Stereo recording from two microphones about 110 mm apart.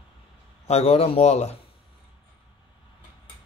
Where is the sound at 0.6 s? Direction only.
70° left (ahead or behind).